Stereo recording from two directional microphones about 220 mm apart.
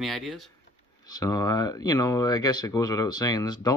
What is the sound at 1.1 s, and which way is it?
Speech, 15° left (ahead or behind).